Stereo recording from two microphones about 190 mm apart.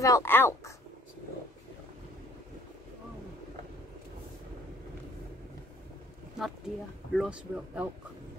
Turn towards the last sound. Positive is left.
turn(degrees=-5)  # may be behind; listen again after turning